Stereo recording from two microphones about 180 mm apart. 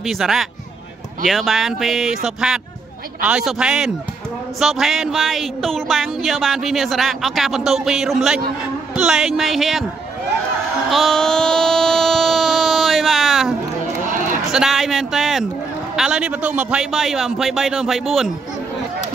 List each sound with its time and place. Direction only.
0.0 s music: centre (ahead or behind)
10.9 s a sound: centre (ahead or behind)
14.0 s sheep: 45° right (ahead or behind)
14.5 s a man's voice: centre (ahead or behind)
16.0 s music: 5° right (ahead or behind)